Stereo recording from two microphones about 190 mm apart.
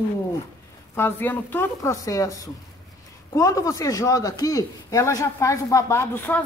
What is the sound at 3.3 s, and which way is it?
Speech, 15° left (ahead or behind).